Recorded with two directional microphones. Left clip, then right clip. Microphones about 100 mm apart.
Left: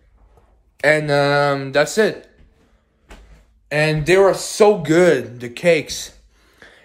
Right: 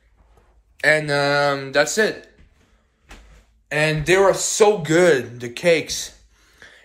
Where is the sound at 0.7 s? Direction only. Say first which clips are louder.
Left 2 dB; 75° left (ahead or behind); by 2.1 s 45° left (ahead or behind).